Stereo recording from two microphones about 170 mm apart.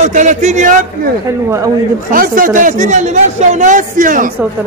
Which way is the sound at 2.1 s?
55° right (ahead or behind).